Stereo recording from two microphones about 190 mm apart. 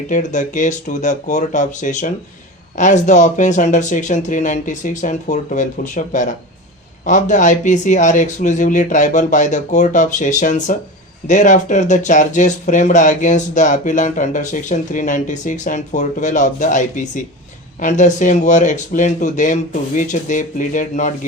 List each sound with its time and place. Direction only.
0.1 s speech: 40° left (ahead or behind)